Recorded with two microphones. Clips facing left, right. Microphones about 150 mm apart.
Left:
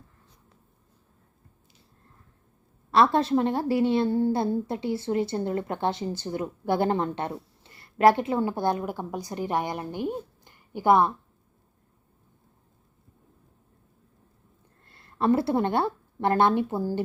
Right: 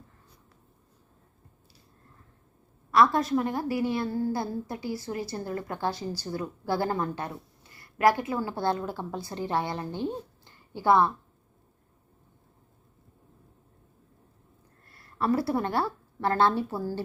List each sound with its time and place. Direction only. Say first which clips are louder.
2.9 s a woman's voice: left 2 dB; 25° left (ahead or behind)
14.8 s speech: left 4 dB; 25° left (ahead or behind)